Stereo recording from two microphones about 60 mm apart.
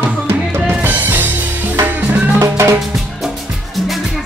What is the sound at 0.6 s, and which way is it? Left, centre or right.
Music, right.